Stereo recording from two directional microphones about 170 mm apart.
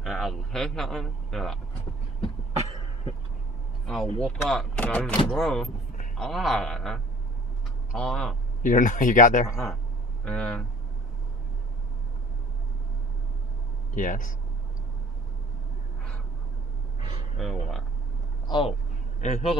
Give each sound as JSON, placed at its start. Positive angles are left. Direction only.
{"t": 0.0, "sound": "a man's voice", "side_deg": 0}
{"t": 3.8, "sound": "speech", "side_deg": 5}
{"t": 8.6, "sound": "speech", "side_deg": 50}
{"t": 10.2, "sound": "speech", "side_deg": 5}
{"t": 13.9, "sound": "speech", "side_deg": 50}
{"t": 17.4, "sound": "speech", "side_deg": 0}
{"t": 18.5, "sound": "a man's voice", "side_deg": 30}